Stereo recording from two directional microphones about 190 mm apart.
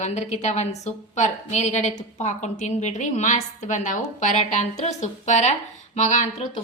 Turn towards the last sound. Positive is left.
turn(degrees=40)  # may be behind; listen again after turning